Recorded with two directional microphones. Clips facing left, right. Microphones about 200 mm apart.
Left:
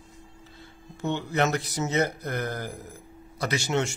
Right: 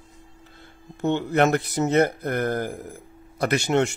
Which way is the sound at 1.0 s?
55° right (ahead or behind).